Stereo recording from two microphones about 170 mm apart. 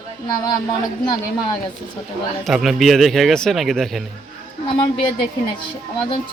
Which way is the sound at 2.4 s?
Centre (ahead or behind).